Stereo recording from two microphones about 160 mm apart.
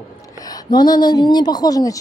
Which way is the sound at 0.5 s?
25° left (ahead or behind).